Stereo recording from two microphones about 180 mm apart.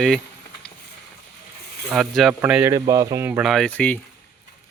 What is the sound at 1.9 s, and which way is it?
Speech, centre (ahead or behind).